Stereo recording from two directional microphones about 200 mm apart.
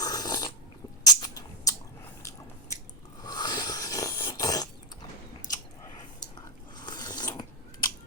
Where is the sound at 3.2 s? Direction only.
20° left (ahead or behind).